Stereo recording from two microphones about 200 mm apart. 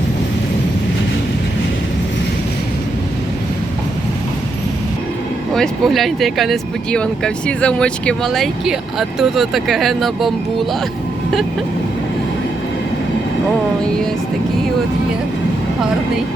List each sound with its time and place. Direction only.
5.5 s speech: centre (ahead or behind)
13.8 s speech: 5° left (ahead or behind)